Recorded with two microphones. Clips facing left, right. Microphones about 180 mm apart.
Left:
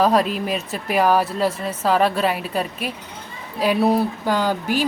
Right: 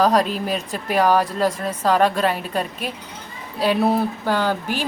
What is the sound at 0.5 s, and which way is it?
A woman's voice, 5° left (ahead or behind).